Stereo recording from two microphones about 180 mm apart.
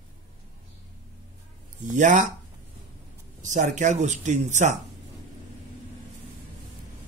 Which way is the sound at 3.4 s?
45° right (ahead or behind).